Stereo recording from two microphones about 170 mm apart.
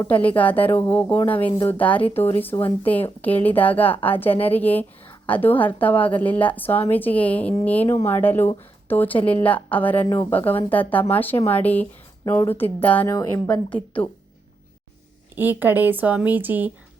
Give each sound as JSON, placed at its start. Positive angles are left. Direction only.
{"t": 0.1, "sound": "a woman's voice", "side_deg": 10}
{"t": 15.4, "sound": "a woman's voice", "side_deg": -10}